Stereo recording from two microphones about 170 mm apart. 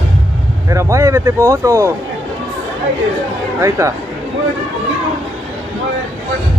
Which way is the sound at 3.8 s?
15° right (ahead or behind).